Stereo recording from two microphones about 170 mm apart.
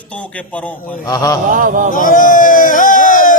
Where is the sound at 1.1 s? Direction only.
20° left (ahead or behind).